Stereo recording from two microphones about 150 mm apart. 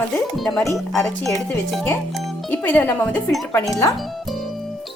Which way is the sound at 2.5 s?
10° left (ahead or behind).